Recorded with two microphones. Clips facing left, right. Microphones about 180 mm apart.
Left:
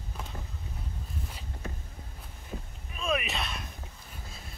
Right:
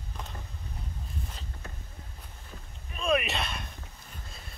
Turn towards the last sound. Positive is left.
turn(degrees=0)  # may be behind; listen again after turning